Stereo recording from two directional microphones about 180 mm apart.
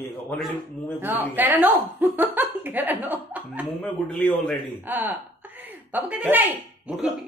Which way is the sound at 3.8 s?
5° left (ahead or behind).